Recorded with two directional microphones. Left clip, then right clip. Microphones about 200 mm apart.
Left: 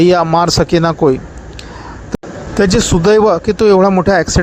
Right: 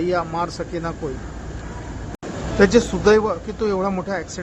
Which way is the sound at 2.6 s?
45° left (ahead or behind).